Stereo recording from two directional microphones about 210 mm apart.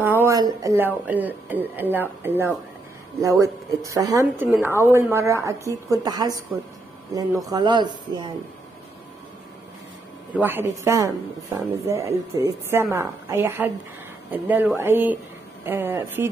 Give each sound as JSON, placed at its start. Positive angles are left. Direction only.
{"t": 0.0, "sound": "speech", "side_deg": -10}
{"t": 10.3, "sound": "speech", "side_deg": -10}